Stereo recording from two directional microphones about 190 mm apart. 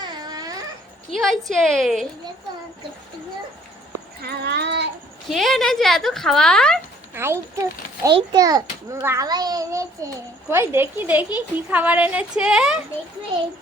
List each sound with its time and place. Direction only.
0.0 s baby cry: 20° right (ahead or behind)
1.1 s a woman's voice: centre (ahead or behind)
4.2 s speech: 60° right (ahead or behind)
5.3 s a woman's voice: centre (ahead or behind)
7.1 s a child's voice: 15° right (ahead or behind)